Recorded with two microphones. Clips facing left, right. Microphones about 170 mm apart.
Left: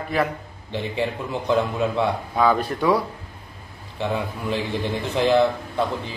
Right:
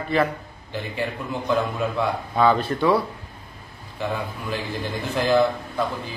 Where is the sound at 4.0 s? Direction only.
20° left (ahead or behind).